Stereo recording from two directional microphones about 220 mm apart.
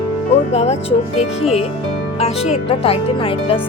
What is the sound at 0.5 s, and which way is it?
Speech, 30° left (ahead or behind).